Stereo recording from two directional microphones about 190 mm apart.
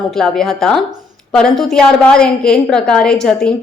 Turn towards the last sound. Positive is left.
turn(degrees=5)  # may be behind; listen again after turning